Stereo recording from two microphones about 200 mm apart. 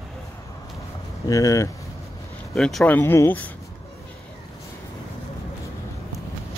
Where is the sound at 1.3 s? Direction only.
15° left (ahead or behind).